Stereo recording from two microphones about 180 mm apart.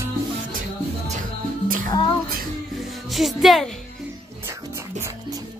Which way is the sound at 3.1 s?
Centre (ahead or behind).